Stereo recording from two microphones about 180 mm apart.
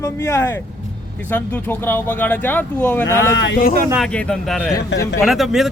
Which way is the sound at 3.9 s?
5° left (ahead or behind).